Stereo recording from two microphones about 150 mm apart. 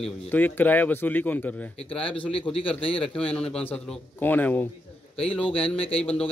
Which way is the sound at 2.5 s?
5° left (ahead or behind).